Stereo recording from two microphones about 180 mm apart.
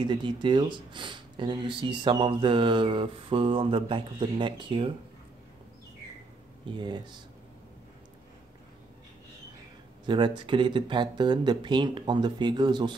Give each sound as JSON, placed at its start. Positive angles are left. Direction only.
{"t": 0.0, "sound": "speech", "side_deg": -25}
{"t": 6.7, "sound": "speech", "side_deg": -25}
{"t": 10.0, "sound": "speech", "side_deg": -25}